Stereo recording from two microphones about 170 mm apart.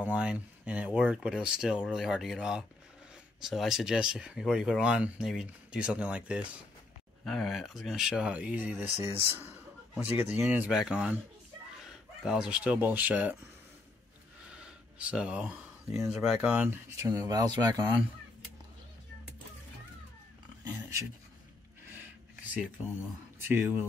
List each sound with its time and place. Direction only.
0.0 s speech: 5° right (ahead or behind)
9.9 s speech: 10° right (ahead or behind)
14.5 s speech: 5° right (ahead or behind); by 17.8 s 20° right (ahead or behind)
20.6 s a sound: 20° right (ahead or behind)
23.5 s speech: 10° right (ahead or behind)